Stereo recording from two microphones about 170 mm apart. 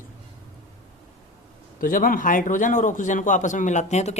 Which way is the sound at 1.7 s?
55° left (ahead or behind).